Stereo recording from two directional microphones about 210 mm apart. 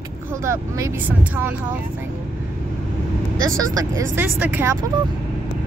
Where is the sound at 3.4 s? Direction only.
15° right (ahead or behind).